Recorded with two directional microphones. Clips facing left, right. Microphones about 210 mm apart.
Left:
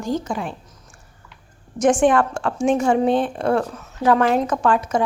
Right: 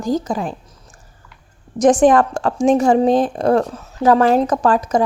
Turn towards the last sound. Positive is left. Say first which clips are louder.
# right 3 dB
turn(degrees=-40)  # may be behind; listen again after turning